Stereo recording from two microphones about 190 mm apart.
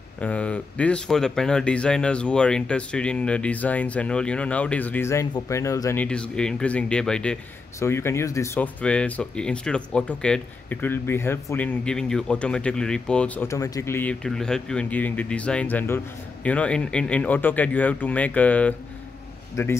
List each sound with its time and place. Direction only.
0.2 s a man's voice: 5° left (ahead or behind)